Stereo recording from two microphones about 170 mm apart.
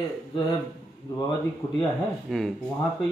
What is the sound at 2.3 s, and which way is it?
Speech, centre (ahead or behind).